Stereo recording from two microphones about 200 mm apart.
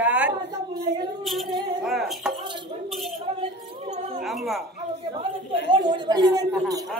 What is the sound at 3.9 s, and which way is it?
Chink, 35° right (ahead or behind).